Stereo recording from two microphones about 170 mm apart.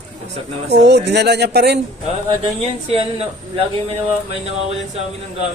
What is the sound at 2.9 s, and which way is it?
Speech, 35° right (ahead or behind).